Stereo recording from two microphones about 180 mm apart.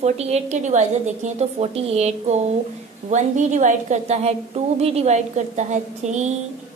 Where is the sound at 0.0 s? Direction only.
35° right (ahead or behind).